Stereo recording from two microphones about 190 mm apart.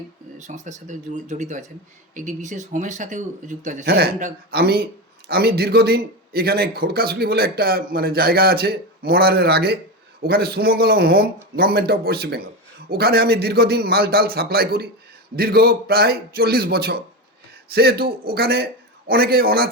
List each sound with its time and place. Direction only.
0.3 s a man's voice: 40° right (ahead or behind)
3.8 s a man's voice: 55° right (ahead or behind)